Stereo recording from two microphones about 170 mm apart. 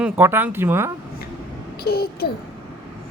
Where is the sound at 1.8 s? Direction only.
65° left (ahead or behind).